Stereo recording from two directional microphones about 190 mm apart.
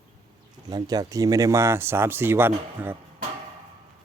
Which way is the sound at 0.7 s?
20° right (ahead or behind).